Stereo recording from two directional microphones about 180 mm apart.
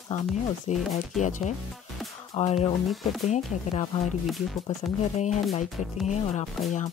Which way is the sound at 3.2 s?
40° left (ahead or behind).